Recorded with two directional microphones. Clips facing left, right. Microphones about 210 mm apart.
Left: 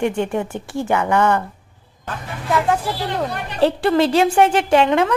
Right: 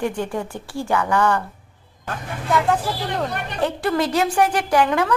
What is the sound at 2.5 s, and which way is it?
Speech, centre (ahead or behind).